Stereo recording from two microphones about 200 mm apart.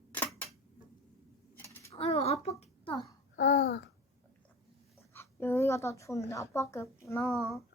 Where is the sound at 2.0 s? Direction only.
30° left (ahead or behind).